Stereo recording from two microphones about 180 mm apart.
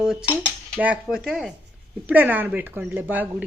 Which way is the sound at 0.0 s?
Centre (ahead or behind).